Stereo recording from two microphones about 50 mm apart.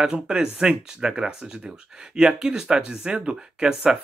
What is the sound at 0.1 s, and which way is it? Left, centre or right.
Speech, centre.